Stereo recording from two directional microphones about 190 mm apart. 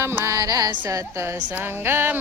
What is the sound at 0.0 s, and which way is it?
Music, 15° right (ahead or behind).